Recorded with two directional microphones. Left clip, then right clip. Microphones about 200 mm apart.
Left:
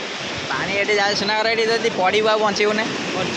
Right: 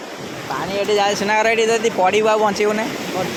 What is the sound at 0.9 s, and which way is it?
Speech, 45° right (ahead or behind).